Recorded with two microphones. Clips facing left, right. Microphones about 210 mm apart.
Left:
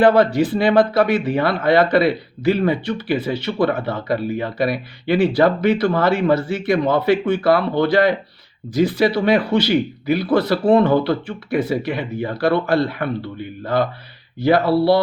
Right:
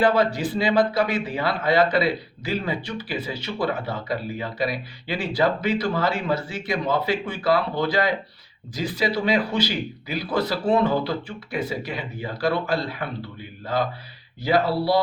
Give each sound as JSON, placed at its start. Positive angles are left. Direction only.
{"t": 0.0, "sound": "speech", "side_deg": 60}
{"t": 14.4, "sound": "speech", "side_deg": 60}